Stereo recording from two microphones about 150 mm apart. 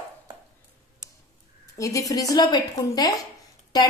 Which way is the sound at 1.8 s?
20° left (ahead or behind).